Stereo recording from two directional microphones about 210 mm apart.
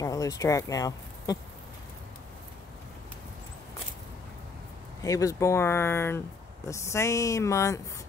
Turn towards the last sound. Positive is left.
turn(degrees=15)  # may be behind; listen again after turning